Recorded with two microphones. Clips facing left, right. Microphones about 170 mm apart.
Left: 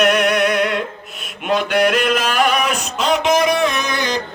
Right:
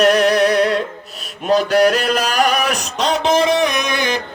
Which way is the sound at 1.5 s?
40° right (ahead or behind).